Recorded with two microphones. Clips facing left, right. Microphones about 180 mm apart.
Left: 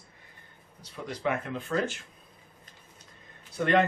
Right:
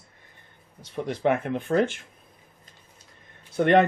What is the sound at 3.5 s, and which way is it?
Speech, 60° right (ahead or behind).